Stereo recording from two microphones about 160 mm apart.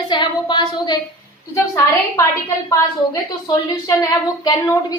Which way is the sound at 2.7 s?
20° left (ahead or behind).